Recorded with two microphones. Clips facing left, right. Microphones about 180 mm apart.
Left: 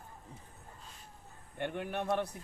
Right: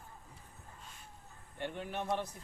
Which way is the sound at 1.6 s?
60° left (ahead or behind).